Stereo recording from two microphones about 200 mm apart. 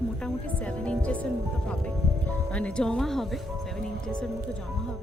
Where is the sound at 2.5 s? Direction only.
5° left (ahead or behind).